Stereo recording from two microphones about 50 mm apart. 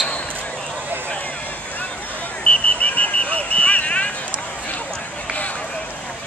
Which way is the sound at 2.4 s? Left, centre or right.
Left.